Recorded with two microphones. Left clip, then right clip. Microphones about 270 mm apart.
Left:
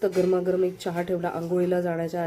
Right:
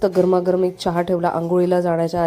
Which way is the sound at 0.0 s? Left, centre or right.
Right.